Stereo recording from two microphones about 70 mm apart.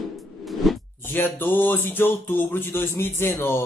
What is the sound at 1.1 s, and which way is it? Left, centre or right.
A man's voice, left.